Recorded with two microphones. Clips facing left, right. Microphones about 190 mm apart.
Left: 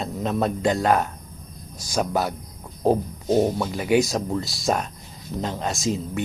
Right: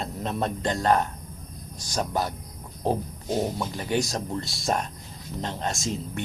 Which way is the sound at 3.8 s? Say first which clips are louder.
Left 7 dB; 10° left (ahead or behind).